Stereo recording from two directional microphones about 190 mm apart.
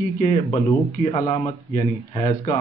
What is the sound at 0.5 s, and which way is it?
A man's voice, 25° left (ahead or behind).